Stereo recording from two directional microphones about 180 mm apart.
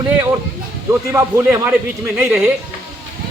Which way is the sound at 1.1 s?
15° right (ahead or behind).